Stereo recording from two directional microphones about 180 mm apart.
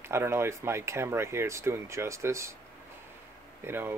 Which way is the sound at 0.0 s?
15° right (ahead or behind).